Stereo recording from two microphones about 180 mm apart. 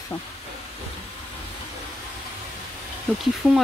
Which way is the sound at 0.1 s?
10° left (ahead or behind).